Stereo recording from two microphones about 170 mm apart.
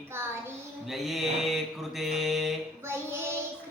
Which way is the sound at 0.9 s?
Centre (ahead or behind).